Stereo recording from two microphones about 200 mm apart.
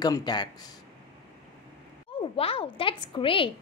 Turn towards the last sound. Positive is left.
turn(degrees=25)  # may be behind; listen again after turning